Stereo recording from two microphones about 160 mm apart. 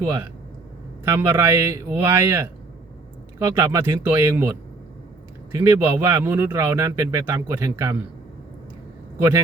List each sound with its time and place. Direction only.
0.0 s speech: 15° right (ahead or behind)